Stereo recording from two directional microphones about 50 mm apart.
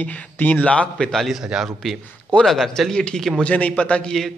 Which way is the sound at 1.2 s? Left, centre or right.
Centre.